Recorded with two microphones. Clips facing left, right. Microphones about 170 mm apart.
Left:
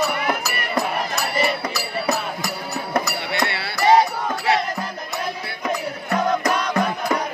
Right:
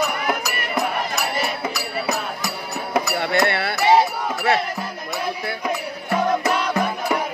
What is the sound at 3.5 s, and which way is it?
Music, 55° right (ahead or behind).